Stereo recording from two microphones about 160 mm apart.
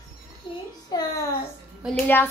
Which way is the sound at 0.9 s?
25° left (ahead or behind).